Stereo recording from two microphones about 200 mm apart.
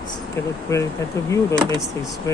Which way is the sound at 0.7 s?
15° left (ahead or behind).